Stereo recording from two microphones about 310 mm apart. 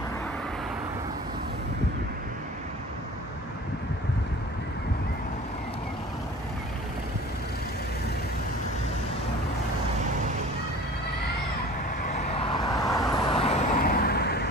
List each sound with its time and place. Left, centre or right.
12.4 s vehicle: centre; by 14.5 s left